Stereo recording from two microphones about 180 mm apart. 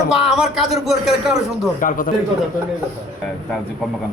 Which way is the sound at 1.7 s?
50° left (ahead or behind).